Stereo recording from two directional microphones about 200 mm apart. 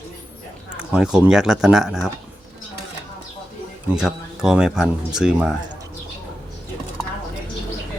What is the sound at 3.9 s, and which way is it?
Speech, 5° right (ahead or behind).